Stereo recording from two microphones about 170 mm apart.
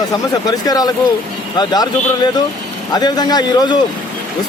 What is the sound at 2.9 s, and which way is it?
Speech, 25° left (ahead or behind).